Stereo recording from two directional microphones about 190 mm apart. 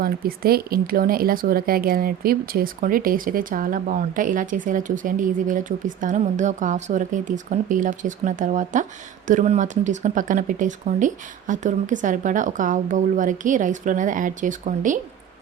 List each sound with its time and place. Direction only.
0.0 s speech: 50° right (ahead or behind)